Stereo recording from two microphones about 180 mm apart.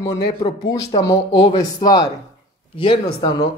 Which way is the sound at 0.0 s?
20° left (ahead or behind).